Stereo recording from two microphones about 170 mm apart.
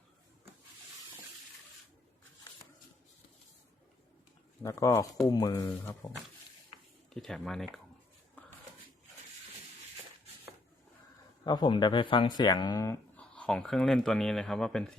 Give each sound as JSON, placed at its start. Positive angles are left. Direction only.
{"t": 4.6, "sound": "speech", "side_deg": 20}
{"t": 7.1, "sound": "speech", "side_deg": 0}
{"t": 11.4, "sound": "speech", "side_deg": 25}